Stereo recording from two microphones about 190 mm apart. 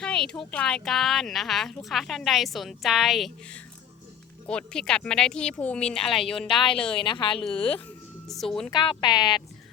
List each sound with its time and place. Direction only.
0.0 s speech: 5° left (ahead or behind)
6.8 s speech: 25° left (ahead or behind)
7.3 s speech: 5° left (ahead or behind)
8.7 s speech: 25° left (ahead or behind)